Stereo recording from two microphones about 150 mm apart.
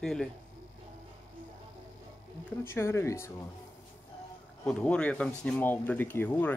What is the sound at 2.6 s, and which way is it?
Speech, 15° left (ahead or behind).